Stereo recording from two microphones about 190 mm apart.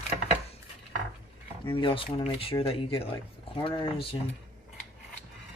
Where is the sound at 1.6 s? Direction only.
25° left (ahead or behind).